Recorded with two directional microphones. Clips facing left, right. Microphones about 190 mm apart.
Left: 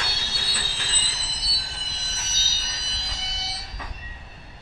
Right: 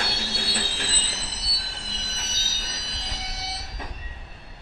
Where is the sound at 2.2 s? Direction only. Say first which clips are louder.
Right 1 dB; 55° right (ahead or behind).